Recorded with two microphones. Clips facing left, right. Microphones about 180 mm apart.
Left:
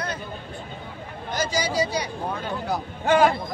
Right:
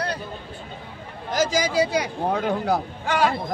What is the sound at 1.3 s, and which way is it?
Speech, 90° right.